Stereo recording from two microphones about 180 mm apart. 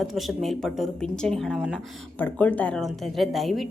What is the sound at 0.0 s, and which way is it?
A woman's voice, centre (ahead or behind).